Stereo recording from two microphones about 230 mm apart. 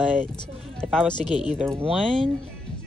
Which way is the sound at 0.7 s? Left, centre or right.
Centre.